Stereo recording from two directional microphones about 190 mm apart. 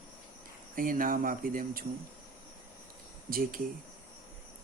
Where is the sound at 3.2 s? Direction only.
50° right (ahead or behind).